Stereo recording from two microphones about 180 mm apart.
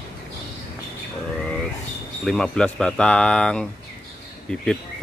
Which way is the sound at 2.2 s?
5° left (ahead or behind).